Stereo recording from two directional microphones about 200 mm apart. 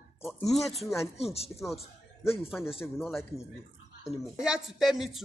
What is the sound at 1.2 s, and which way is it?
Speech, 30° left (ahead or behind).